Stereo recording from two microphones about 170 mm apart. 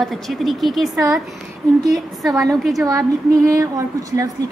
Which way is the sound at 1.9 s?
Centre (ahead or behind).